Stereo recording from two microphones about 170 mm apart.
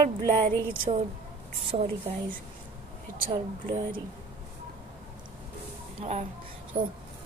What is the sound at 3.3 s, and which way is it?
Speech, 30° right (ahead or behind).